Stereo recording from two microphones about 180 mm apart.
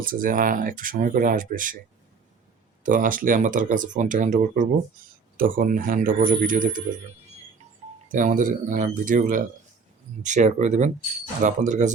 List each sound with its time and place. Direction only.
0.0 s speech: 50° right (ahead or behind)
2.8 s speech: 45° right (ahead or behind)
8.1 s speech: 45° right (ahead or behind)